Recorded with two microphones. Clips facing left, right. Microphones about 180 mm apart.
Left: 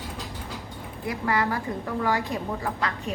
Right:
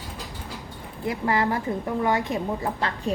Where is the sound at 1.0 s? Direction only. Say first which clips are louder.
Right 2 dB; 25° right (ahead or behind).